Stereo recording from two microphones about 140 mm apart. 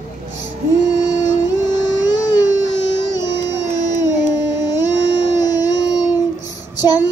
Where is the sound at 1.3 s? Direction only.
30° left (ahead or behind).